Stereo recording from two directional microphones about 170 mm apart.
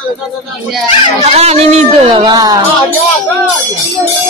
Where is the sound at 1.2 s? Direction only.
40° right (ahead or behind); by 2.6 s 20° right (ahead or behind).